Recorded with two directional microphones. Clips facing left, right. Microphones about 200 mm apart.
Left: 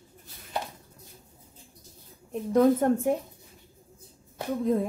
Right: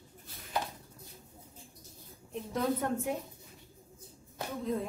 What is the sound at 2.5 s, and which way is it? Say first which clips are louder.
Speech: left 11 dB; 50° left (ahead or behind).